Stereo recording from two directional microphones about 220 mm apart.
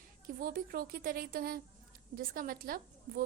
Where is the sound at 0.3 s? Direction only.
40° right (ahead or behind).